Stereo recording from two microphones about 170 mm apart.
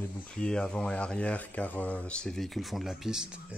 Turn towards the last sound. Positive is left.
turn(degrees=-5)  # may be behind; listen again after turning